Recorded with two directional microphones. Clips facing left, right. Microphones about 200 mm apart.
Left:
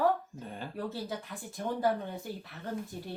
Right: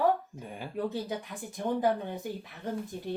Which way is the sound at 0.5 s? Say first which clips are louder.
Right 5 dB; 15° right (ahead or behind).